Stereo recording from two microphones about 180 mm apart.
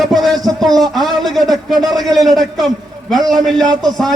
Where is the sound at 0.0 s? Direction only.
Centre (ahead or behind).